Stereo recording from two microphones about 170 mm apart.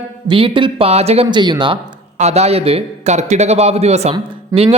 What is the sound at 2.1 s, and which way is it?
A man's voice, 40° right (ahead or behind).